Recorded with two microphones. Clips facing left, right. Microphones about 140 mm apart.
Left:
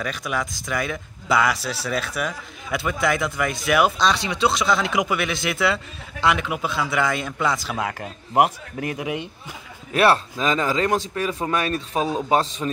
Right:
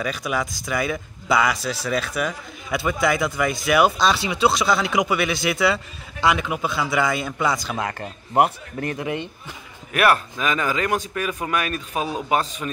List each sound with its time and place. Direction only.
0.0 s speech: 5° right (ahead or behind)
9.9 s a man's voice: 30° left (ahead or behind)